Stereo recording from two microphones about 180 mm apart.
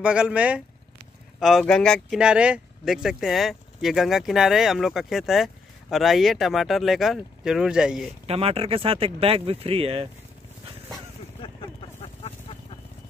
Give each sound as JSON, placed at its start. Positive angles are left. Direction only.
{"t": 0.0, "sound": "speech", "side_deg": -5}
{"t": 8.3, "sound": "speech", "side_deg": -35}
{"t": 12.0, "sound": "a sound", "side_deg": 35}